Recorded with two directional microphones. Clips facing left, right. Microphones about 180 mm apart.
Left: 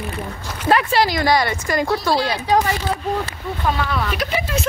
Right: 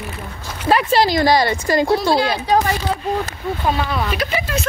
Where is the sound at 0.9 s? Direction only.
30° right (ahead or behind).